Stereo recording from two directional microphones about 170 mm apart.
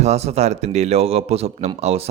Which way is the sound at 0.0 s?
40° right (ahead or behind).